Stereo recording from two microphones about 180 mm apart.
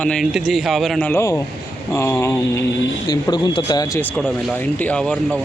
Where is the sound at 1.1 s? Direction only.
15° left (ahead or behind).